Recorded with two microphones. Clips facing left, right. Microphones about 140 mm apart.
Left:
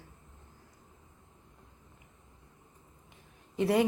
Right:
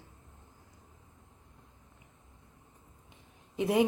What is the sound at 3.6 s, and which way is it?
Speech, 15° right (ahead or behind).